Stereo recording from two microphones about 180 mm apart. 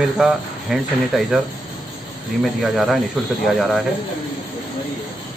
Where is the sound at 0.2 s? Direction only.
Centre (ahead or behind).